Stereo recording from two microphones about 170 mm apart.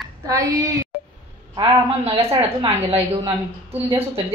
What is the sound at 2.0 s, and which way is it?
A woman's voice, 35° right (ahead or behind).